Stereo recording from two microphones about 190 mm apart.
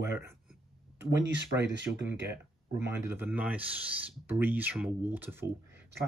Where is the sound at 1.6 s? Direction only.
70° right (ahead or behind).